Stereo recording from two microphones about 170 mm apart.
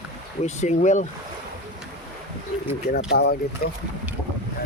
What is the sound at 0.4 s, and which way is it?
Speech, 45° left (ahead or behind).